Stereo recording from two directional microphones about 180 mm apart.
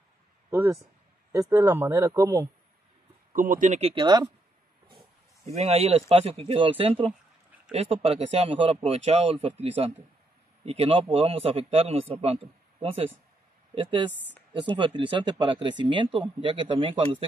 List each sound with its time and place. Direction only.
0.5 s speech: 15° right (ahead or behind)
3.3 s speech: 45° right (ahead or behind); by 4.3 s 25° right (ahead or behind)
5.5 s speech: 35° right (ahead or behind)
13.7 s speech: 25° right (ahead or behind)